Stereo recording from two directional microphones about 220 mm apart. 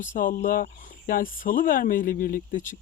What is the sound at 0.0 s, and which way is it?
Speech, 35° left (ahead or behind).